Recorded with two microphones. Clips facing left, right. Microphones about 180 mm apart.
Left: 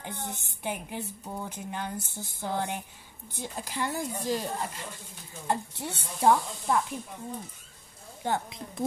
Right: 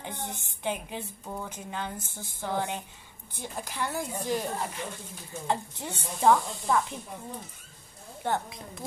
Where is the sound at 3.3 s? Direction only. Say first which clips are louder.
Even; 15° right (ahead or behind).